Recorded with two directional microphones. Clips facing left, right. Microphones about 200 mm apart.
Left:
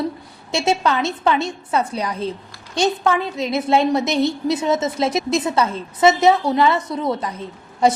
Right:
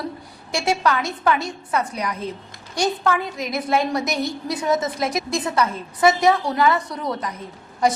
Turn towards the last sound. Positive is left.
turn(degrees=25)  # may be behind; listen again after turning